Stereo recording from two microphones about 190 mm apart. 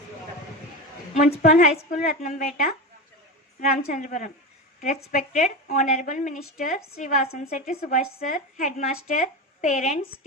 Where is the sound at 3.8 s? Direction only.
45° left (ahead or behind).